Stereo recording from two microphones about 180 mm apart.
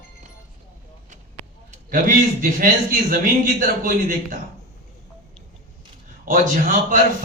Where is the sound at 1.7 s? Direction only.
50° right (ahead or behind).